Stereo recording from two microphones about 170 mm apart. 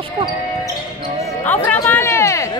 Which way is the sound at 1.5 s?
10° left (ahead or behind).